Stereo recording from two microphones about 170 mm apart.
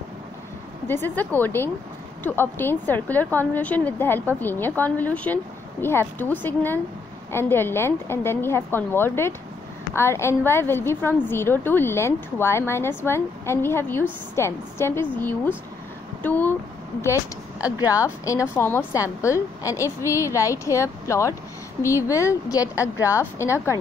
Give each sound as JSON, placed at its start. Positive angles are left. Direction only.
{"t": 0.8, "sound": "a woman's voice", "side_deg": 10}
{"t": 17.6, "sound": "a woman's voice", "side_deg": 20}